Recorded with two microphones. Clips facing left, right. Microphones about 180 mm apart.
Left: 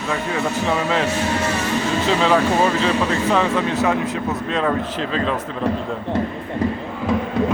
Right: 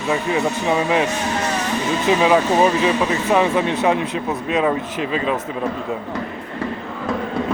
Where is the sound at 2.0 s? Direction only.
10° right (ahead or behind).